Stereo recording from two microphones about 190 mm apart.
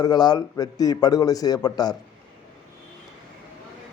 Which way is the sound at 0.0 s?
20° left (ahead or behind).